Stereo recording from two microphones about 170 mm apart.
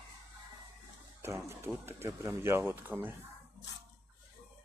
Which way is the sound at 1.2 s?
15° right (ahead or behind).